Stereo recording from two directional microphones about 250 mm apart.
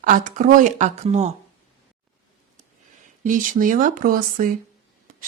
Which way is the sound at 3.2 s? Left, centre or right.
Right.